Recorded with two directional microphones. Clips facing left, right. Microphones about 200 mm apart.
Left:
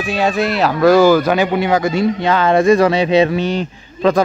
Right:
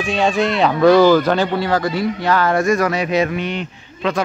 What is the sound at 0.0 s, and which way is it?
Speech, 5° left (ahead or behind).